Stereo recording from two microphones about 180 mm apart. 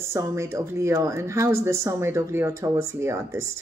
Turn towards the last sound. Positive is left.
turn(degrees=-15)  # may be behind; listen again after turning